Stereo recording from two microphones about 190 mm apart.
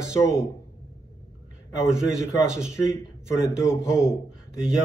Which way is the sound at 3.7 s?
5° right (ahead or behind).